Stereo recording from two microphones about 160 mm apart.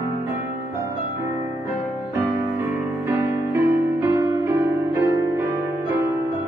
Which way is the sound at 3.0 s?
15° right (ahead or behind).